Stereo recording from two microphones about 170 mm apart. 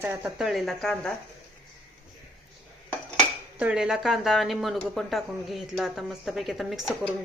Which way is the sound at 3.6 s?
5° right (ahead or behind).